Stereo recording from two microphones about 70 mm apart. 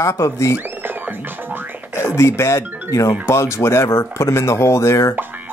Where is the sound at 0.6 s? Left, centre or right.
Right.